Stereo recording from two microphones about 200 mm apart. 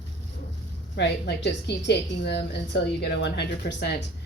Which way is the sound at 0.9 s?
60° left (ahead or behind).